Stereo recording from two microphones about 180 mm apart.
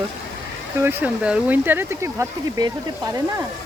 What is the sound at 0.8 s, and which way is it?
Speech, 10° right (ahead or behind).